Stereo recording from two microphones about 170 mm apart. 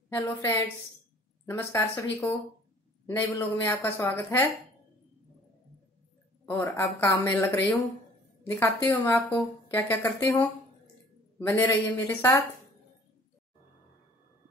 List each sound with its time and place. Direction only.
0.1 s speech: 15° left (ahead or behind)
6.4 s speech: 10° left (ahead or behind)
8.8 s speech: 15° left (ahead or behind)